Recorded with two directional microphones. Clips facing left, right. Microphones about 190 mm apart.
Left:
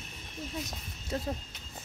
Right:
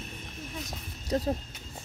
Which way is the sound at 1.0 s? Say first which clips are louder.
Right 6 dB; 40° right (ahead or behind).